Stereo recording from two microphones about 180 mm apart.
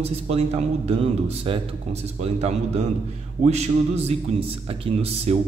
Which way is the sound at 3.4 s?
35° right (ahead or behind).